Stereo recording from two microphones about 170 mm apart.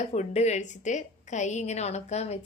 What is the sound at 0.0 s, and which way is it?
A woman's voice, 40° left (ahead or behind).